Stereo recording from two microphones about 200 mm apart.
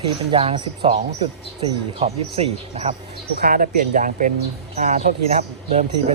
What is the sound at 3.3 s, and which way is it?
Speech, 45° right (ahead or behind).